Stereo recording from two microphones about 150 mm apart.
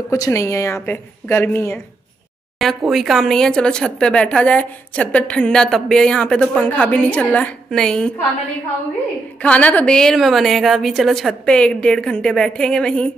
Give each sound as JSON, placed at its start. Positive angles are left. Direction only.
{"t": 0.1, "sound": "a woman's voice", "side_deg": 20}
{"t": 2.6, "sound": "speech", "side_deg": 0}
{"t": 9.4, "sound": "speech", "side_deg": 10}